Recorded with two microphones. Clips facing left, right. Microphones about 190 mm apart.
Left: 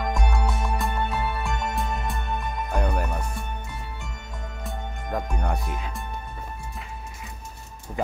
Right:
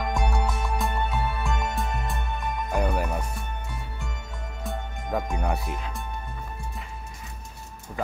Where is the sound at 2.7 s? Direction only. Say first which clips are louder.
Right 1 dB; 5° right (ahead or behind).